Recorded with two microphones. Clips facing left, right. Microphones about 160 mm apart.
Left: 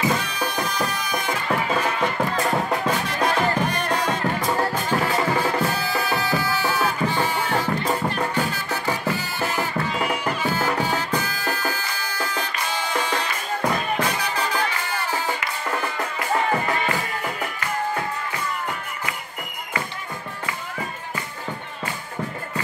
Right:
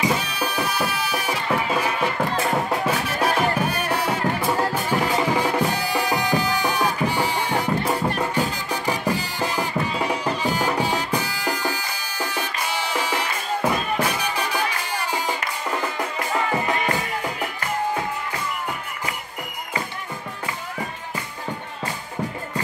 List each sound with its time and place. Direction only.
0.0 s music: 10° right (ahead or behind)